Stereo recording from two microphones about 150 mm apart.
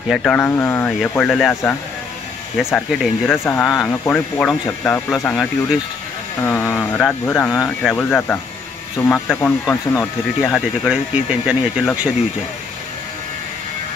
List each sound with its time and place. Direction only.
0.1 s speech: 5° left (ahead or behind)
1.5 s speech: 15° left (ahead or behind)
2.5 s speech: centre (ahead or behind)
3.3 s speech: 10° left (ahead or behind)
3.6 s speech: centre (ahead or behind)
3.9 s speech: 10° left (ahead or behind)
6.4 s speech: 10° left (ahead or behind)
9.7 s speech: centre (ahead or behind)